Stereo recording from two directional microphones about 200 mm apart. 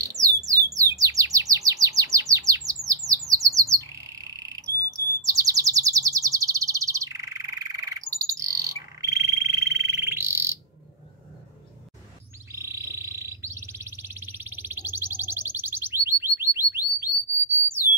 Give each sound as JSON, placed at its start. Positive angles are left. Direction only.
{"t": 0.0, "sound": "bird", "side_deg": -15}
{"t": 12.4, "sound": "music", "side_deg": -15}